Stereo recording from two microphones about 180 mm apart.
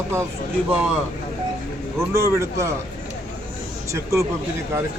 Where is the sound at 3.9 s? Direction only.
15° right (ahead or behind).